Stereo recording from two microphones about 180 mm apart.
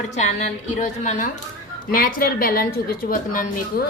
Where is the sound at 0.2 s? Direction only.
40° left (ahead or behind); by 2.6 s 55° left (ahead or behind).